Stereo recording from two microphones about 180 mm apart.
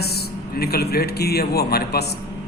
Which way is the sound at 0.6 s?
60° left (ahead or behind).